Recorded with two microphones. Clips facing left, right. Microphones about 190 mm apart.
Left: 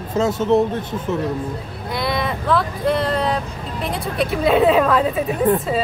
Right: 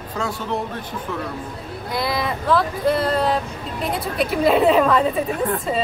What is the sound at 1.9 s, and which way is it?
Vehicle, centre (ahead or behind).